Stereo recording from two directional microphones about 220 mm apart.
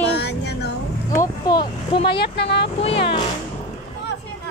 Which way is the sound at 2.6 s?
25° left (ahead or behind).